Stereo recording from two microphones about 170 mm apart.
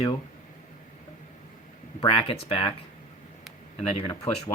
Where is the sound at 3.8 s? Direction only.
35° left (ahead or behind).